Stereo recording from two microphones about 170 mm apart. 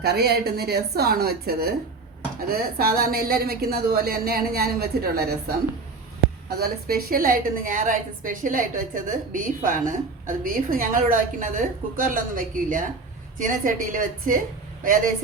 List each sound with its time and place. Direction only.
0.0 s a woman's voice: 70° right (ahead or behind)
6.6 s a woman's voice: 60° right (ahead or behind)